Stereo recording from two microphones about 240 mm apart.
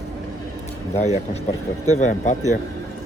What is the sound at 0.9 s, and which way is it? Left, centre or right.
Speech, left.